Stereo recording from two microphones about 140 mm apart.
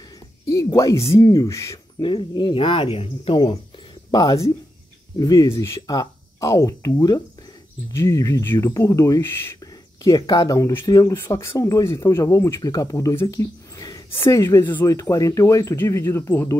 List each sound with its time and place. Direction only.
0.5 s speech: 25° left (ahead or behind)
2.0 s speech: 35° left (ahead or behind); by 9.5 s 15° left (ahead or behind)
10.0 s speech: 25° left (ahead or behind)